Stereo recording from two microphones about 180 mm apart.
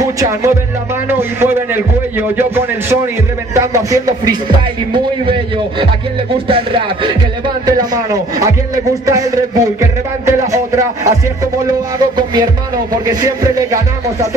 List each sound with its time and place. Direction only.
0.0 s music: 20° right (ahead or behind)
1.4 s a man's voice: 10° right (ahead or behind)